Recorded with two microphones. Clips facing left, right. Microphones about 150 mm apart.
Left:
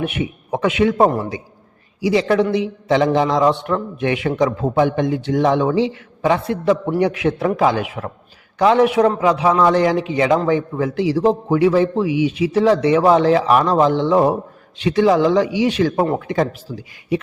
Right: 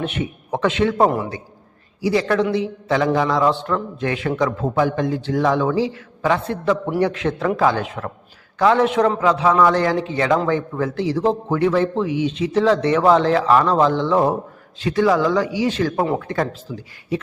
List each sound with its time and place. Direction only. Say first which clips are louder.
0.0 s a man's voice: left 2 dB; 15° left (ahead or behind)